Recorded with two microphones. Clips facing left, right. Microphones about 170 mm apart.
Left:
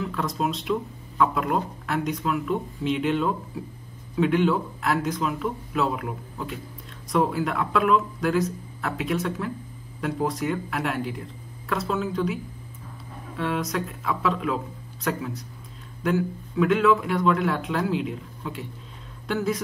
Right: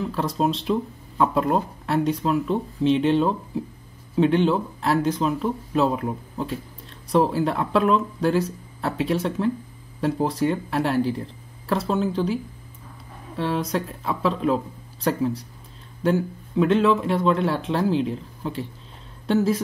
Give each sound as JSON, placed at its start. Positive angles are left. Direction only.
{"t": 0.0, "sound": "a man's voice", "side_deg": -30}
{"t": 13.4, "sound": "a man's voice", "side_deg": -30}